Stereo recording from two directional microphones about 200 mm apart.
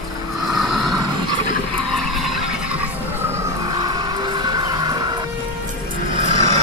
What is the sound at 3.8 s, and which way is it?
Music, 20° right (ahead or behind).